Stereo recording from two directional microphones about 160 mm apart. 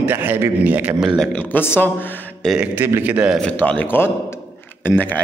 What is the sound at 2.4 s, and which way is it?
Speech, 10° right (ahead or behind).